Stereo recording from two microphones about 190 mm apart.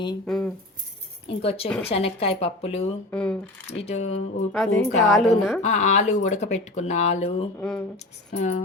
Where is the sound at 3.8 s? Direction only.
35° left (ahead or behind).